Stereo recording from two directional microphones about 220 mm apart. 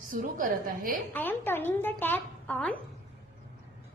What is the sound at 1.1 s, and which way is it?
A woman's voice, 10° left (ahead or behind).